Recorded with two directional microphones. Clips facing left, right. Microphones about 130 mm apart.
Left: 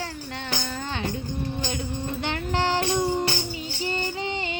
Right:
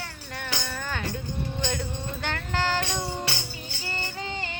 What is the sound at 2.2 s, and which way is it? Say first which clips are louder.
Music: left 2 dB; 20° left (ahead or behind).